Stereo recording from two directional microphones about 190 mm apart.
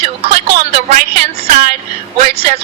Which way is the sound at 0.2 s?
35° right (ahead or behind).